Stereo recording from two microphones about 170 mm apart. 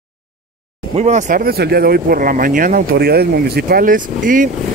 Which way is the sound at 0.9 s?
40° right (ahead or behind).